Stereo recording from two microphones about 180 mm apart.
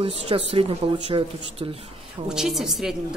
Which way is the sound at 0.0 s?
30° right (ahead or behind).